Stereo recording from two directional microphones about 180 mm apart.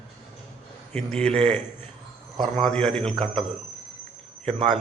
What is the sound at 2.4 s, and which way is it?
A man's voice, 5° left (ahead or behind).